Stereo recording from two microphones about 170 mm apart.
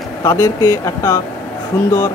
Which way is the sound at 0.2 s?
15° left (ahead or behind).